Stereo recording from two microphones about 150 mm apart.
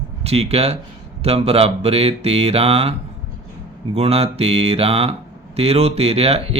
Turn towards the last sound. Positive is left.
turn(degrees=-40)  # may be behind; listen again after turning